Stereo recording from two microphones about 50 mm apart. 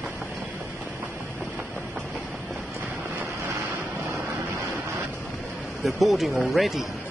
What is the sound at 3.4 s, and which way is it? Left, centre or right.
Vehicle, right.